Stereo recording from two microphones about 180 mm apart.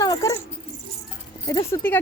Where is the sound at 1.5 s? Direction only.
20° left (ahead or behind).